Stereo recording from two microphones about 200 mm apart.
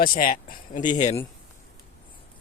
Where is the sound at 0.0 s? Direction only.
45° left (ahead or behind).